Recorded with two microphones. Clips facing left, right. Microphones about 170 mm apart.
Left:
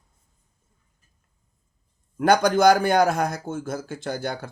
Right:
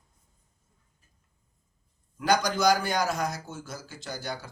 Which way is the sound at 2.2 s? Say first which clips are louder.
Left 7 dB; 55° left (ahead or behind).